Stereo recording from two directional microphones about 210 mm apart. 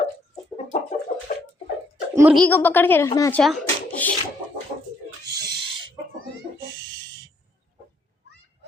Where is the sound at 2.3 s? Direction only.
5° left (ahead or behind).